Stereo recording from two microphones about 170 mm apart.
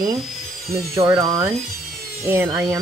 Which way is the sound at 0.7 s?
15° right (ahead or behind).